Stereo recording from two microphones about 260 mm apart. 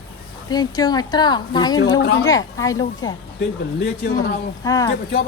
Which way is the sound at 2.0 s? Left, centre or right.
Left.